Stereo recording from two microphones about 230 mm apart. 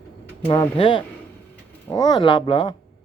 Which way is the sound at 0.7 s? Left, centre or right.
Left.